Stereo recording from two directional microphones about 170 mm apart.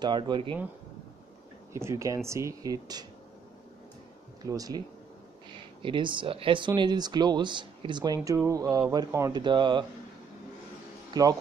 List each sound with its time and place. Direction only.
0.0 s speech: 25° right (ahead or behind)
1.7 s speech: 15° right (ahead or behind)
4.4 s speech: 20° right (ahead or behind)
11.1 s speech: 25° right (ahead or behind)